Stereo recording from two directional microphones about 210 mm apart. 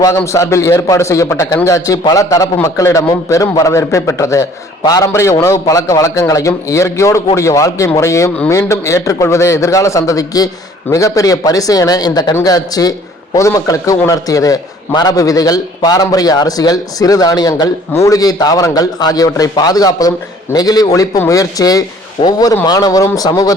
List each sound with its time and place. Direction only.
0.0 s a man's voice: 15° left (ahead or behind)